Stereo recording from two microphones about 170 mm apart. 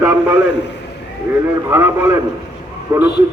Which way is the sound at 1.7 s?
15° right (ahead or behind).